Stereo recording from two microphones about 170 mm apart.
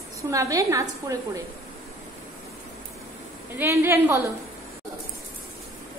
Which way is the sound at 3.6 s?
15° right (ahead or behind).